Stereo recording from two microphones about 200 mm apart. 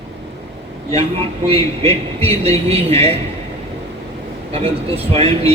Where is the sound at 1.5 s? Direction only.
30° right (ahead or behind).